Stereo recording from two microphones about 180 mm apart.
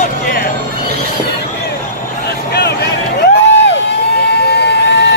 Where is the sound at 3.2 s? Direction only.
75° left (ahead or behind).